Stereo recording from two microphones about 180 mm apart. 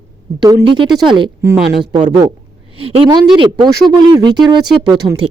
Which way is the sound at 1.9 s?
40° right (ahead or behind).